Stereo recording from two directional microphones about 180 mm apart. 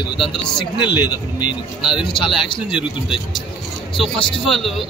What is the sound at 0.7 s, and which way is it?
Speech, 25° left (ahead or behind).